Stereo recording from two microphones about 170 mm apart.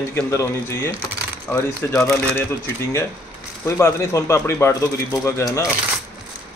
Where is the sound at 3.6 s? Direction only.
15° left (ahead or behind).